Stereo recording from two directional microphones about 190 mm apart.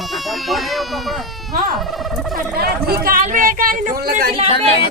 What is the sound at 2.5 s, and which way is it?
Speech, 55° right (ahead or behind).